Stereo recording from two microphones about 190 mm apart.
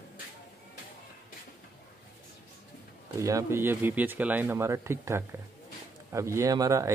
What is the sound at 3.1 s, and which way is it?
Speech, 15° right (ahead or behind).